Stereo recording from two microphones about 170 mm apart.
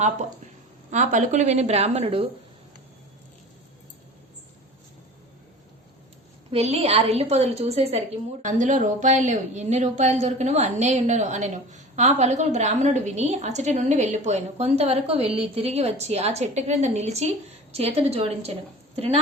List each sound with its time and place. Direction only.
0.9 s a woman's voice: 45° right (ahead or behind)
6.5 s a woman's voice: 35° right (ahead or behind)